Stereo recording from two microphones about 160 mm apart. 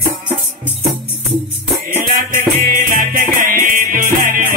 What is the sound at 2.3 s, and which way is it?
Music, 65° right (ahead or behind).